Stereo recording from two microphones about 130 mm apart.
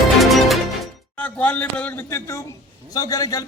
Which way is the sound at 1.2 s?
10° left (ahead or behind).